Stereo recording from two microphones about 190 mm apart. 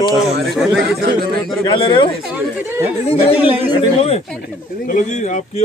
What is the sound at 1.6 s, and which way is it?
Speech, 25° left (ahead or behind).